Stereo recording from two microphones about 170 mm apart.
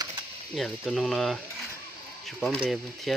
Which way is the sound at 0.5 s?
Centre (ahead or behind).